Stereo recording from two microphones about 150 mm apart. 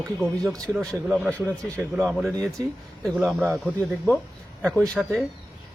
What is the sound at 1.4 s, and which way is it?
Speech, 20° right (ahead or behind).